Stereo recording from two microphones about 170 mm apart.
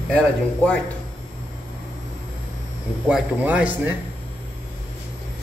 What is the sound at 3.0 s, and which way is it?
Speech, 5° right (ahead or behind).